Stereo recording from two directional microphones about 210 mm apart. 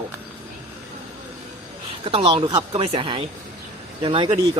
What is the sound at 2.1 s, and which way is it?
Speech, 25° right (ahead or behind).